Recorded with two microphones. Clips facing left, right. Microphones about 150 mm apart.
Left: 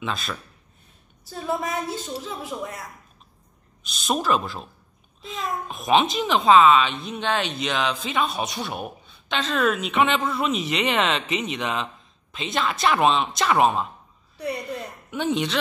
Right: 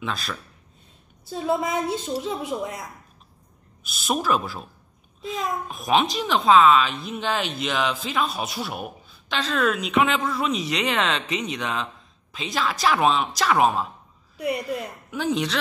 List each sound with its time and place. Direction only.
0.0 s a child's voice: centre (ahead or behind)
1.3 s a woman's voice: 20° right (ahead or behind)
3.8 s a child's voice: 5° right (ahead or behind)
14.4 s a woman's voice: 10° right (ahead or behind)
15.0 s speech: centre (ahead or behind)